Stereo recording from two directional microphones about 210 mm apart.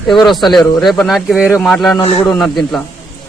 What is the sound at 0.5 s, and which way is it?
Speech, centre (ahead or behind).